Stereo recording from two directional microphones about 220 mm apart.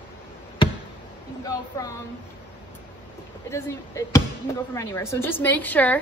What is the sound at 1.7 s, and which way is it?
Speech, 15° left (ahead or behind).